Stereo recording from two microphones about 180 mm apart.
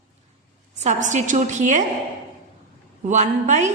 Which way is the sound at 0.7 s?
40° right (ahead or behind).